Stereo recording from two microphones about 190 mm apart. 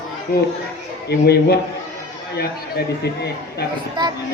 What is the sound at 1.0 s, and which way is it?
A man's voice, 60° left (ahead or behind).